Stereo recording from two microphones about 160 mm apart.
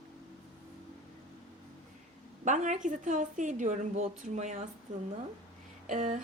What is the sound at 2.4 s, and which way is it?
A woman's voice, 50° right (ahead or behind).